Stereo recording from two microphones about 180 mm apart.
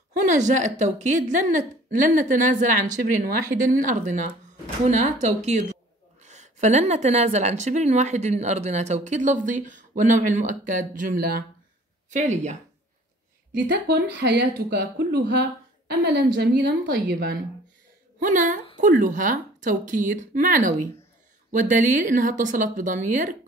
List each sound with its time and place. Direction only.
0.1 s a woman's voice: 45° right (ahead or behind)
3.8 s a woman's voice: 45° right (ahead or behind)
12.1 s a woman's voice: 40° right (ahead or behind)
13.8 s speech: 70° right (ahead or behind)
16.6 s speech: 55° right (ahead or behind)
18.2 s a woman's voice: 45° right (ahead or behind)